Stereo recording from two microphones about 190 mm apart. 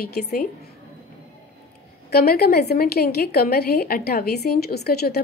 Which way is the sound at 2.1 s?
55° left (ahead or behind).